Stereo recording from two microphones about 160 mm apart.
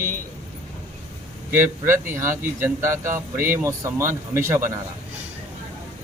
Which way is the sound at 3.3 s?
60° right (ahead or behind).